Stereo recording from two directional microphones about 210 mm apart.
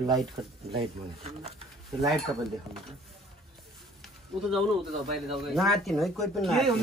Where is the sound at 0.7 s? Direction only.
30° right (ahead or behind).